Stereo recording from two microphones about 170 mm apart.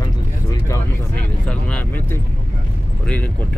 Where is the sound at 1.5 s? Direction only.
5° left (ahead or behind).